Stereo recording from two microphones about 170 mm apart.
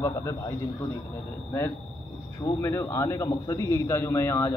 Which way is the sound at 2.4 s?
15° left (ahead or behind).